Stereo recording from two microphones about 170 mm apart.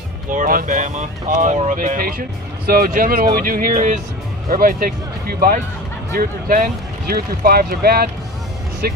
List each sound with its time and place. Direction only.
0.3 s speech: 55° right (ahead or behind)
6.1 s speech: 60° right (ahead or behind)